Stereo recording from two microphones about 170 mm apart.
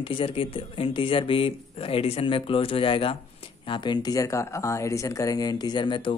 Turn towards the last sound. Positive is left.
turn(degrees=30)  # may be behind; listen again after turning